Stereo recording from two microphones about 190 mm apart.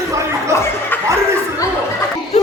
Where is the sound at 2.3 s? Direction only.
35° left (ahead or behind).